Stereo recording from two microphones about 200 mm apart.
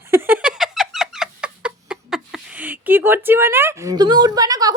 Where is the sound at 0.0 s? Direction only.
10° right (ahead or behind).